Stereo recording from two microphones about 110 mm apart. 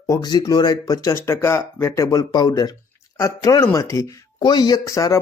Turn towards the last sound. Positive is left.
turn(degrees=30)  # may be behind; listen again after turning